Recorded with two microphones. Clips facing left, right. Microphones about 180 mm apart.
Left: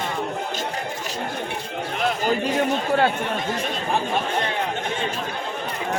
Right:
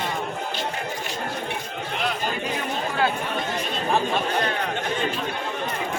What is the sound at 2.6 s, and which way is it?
Speech, 40° left (ahead or behind).